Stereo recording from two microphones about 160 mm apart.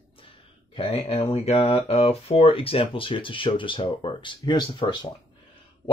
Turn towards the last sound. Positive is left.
turn(degrees=30)  # may be behind; listen again after turning